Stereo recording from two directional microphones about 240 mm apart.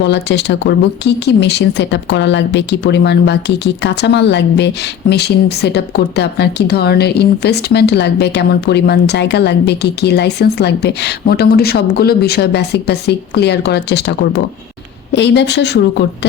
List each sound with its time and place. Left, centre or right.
0.0 s speech: left